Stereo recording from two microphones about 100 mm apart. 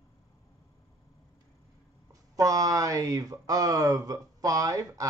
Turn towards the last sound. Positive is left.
turn(degrees=-35)  # may be behind; listen again after turning